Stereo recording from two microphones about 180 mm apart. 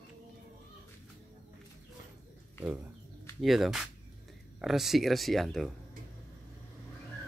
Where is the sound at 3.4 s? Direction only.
Centre (ahead or behind).